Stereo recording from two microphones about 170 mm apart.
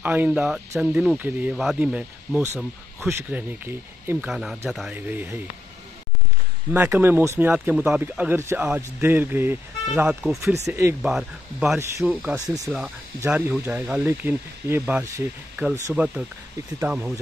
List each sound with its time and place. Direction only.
0.0 s speech: 10° right (ahead or behind)
4.3 s speech: centre (ahead or behind)
6.7 s speech: 10° right (ahead or behind)
11.0 s speech: centre (ahead or behind)
12.4 s speech: 20° right (ahead or behind)
12.7 s speech: 5° right (ahead or behind)